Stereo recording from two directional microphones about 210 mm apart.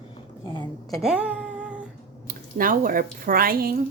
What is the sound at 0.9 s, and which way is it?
Speech, centre (ahead or behind).